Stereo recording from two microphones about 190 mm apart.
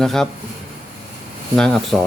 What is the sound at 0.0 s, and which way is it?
Speech, centre (ahead or behind).